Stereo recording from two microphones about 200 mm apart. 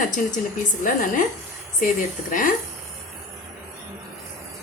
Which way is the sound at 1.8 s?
40° left (ahead or behind).